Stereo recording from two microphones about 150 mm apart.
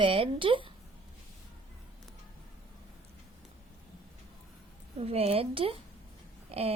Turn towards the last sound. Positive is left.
turn(degrees=-40)  # may be behind; listen again after turning